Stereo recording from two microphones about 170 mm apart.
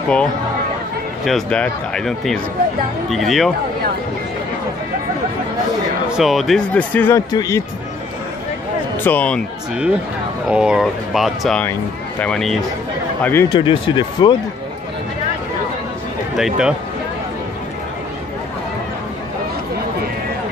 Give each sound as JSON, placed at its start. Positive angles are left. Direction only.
{"t": 1.2, "sound": "speech", "side_deg": 5}
{"t": 6.0, "sound": "speech", "side_deg": 0}
{"t": 9.0, "sound": "speech", "side_deg": 10}
{"t": 10.5, "sound": "speech", "side_deg": -5}
{"t": 13.5, "sound": "speech", "side_deg": 30}
{"t": 16.3, "sound": "speech", "side_deg": -5}